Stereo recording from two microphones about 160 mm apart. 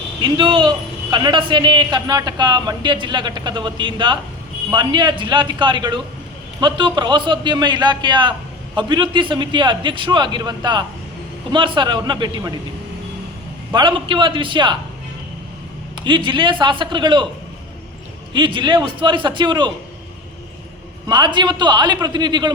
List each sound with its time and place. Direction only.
0.2 s a man's voice: 30° right (ahead or behind)
13.7 s a man's voice: 30° right (ahead or behind)
16.0 s a man's voice: 30° right (ahead or behind)
18.3 s a man's voice: 30° right (ahead or behind)
21.1 s a man's voice: 30° right (ahead or behind)